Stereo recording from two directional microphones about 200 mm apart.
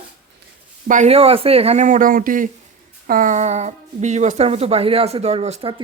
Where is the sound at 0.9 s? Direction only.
35° right (ahead or behind).